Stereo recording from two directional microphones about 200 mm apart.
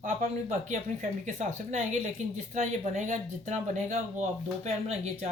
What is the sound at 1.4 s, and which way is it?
A woman's voice, 40° right (ahead or behind).